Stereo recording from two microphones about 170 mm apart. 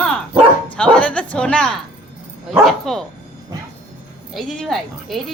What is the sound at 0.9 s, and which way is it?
Bow-wow, 5° left (ahead or behind).